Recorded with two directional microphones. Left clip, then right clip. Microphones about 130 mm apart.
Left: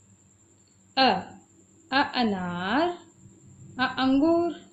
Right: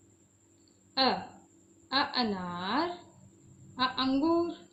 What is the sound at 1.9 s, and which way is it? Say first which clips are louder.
A woman's voice: left 5 dB; 55° left (ahead or behind).